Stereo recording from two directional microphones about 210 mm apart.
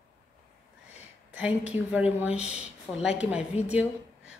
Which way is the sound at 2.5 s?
5° right (ahead or behind).